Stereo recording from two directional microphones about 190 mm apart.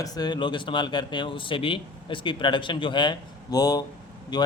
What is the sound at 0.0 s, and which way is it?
Speech, 20° left (ahead or behind).